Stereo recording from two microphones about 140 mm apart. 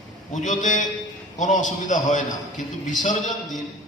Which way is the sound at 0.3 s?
60° left (ahead or behind).